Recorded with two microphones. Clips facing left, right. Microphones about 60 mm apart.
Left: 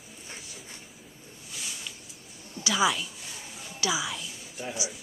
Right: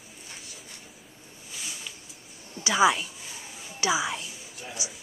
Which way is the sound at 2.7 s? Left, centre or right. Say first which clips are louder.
Right 4 dB; right.